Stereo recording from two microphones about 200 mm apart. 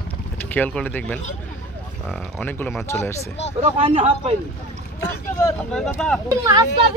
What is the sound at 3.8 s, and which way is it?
Speech, 25° right (ahead or behind).